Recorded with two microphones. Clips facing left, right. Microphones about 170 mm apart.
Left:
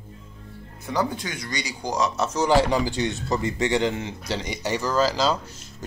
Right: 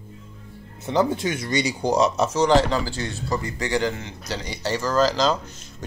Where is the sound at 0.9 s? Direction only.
25° right (ahead or behind).